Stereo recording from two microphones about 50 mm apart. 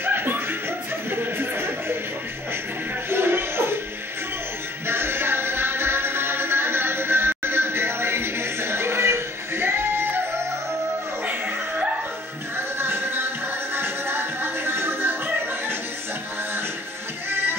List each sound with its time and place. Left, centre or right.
0.0 s chuckle: right
3.1 s music: right
4.8 s music: right
11.2 s chuckle: right
12.5 s music: right
17.3 s music: right